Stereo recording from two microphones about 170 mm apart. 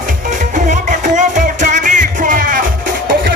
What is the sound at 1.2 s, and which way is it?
Music, 50° right (ahead or behind).